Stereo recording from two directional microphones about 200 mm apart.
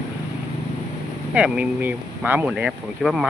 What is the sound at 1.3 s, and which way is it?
Speech, 5° right (ahead or behind).